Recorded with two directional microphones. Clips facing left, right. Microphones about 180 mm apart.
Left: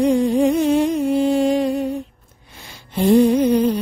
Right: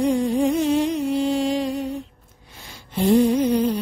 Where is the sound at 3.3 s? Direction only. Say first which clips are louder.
Left 4 dB; 60° left (ahead or behind).